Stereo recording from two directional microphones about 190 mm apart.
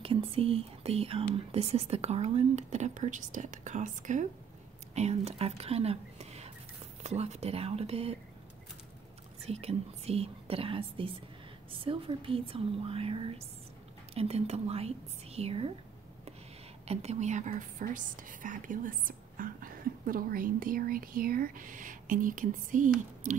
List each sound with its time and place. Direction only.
0.0 s speech: 30° right (ahead or behind)
9.5 s speech: 35° right (ahead or behind)
16.8 s a woman's voice: 35° right (ahead or behind)